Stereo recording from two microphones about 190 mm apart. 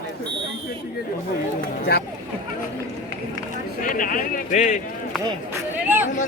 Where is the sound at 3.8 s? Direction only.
45° left (ahead or behind).